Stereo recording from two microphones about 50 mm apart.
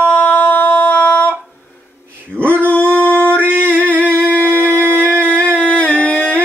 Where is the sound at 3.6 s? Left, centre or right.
Left.